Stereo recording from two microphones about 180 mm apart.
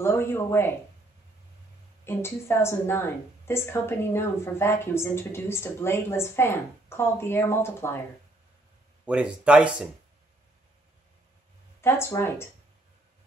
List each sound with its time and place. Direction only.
0.0 s a woman's voice: 10° left (ahead or behind)
2.0 s a woman's voice: 15° left (ahead or behind)
9.0 s speech: 5° right (ahead or behind)
11.8 s a woman's voice: 15° left (ahead or behind)